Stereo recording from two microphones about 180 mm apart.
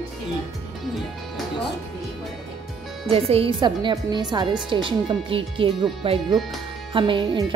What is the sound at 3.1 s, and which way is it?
A woman's voice, 30° right (ahead or behind).